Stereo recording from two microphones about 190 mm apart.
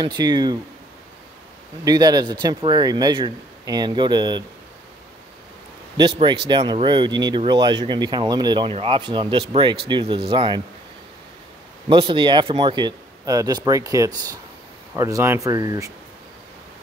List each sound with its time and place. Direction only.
0.0 s speech: 20° right (ahead or behind)
1.9 s speech: 20° right (ahead or behind)
5.9 s speech: 25° right (ahead or behind)
11.9 s speech: 25° right (ahead or behind)